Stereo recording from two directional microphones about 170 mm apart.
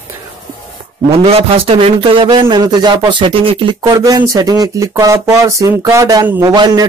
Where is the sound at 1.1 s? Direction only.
35° right (ahead or behind).